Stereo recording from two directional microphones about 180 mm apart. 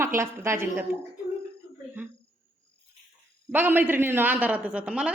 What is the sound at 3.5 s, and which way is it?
A woman's voice, 10° right (ahead or behind).